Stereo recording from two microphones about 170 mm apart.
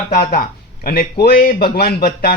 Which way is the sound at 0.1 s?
60° left (ahead or behind).